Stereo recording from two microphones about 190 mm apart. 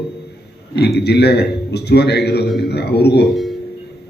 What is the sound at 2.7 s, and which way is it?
Speech, 60° left (ahead or behind).